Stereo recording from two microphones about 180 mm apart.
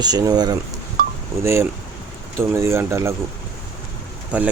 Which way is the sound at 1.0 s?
50° right (ahead or behind).